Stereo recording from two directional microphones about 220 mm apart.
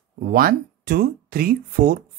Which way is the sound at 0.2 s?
45° right (ahead or behind).